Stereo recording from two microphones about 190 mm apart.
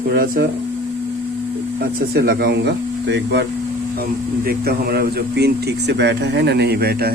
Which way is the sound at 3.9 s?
50° right (ahead or behind).